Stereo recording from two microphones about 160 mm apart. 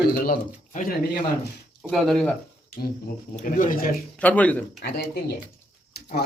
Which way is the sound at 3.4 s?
55° left (ahead or behind).